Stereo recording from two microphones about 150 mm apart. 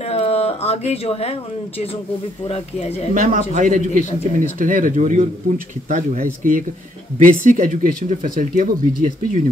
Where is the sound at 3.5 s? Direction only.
60° right (ahead or behind).